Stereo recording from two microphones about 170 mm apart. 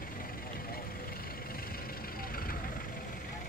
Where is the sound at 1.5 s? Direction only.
60° left (ahead or behind).